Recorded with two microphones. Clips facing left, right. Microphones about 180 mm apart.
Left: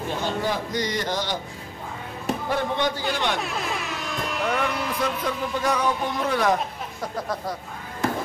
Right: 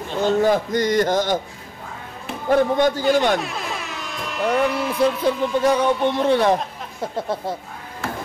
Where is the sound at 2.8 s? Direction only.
45° right (ahead or behind).